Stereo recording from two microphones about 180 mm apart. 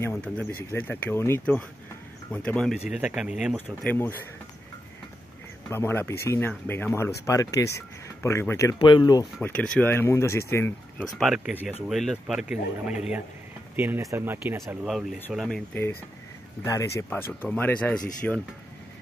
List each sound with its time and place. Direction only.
0.0 s speech: 10° left (ahead or behind)
3.5 s speech: 10° left (ahead or behind)
5.7 s speech: 15° left (ahead or behind)
9.4 s speech: 10° left (ahead or behind)
13.7 s speech: 10° right (ahead or behind); by 18.4 s 5° left (ahead or behind)